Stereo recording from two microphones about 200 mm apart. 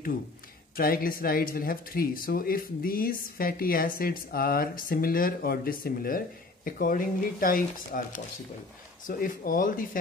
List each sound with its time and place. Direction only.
0.7 s speech: 45° left (ahead or behind)